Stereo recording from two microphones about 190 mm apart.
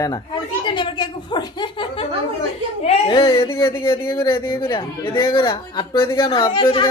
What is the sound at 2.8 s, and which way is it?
Speech, 35° left (ahead or behind).